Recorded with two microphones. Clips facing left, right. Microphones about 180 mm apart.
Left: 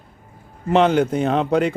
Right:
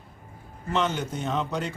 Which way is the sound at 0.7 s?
60° left (ahead or behind).